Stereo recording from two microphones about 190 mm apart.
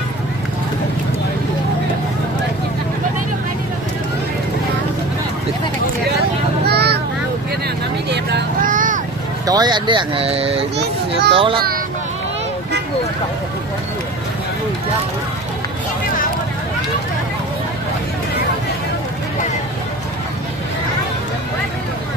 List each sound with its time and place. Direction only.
6.6 s a sound: 60° right (ahead or behind)
8.1 s vehicle: 60° right (ahead or behind); by 9.0 s 45° right (ahead or behind)
9.5 s speech: 20° right (ahead or behind)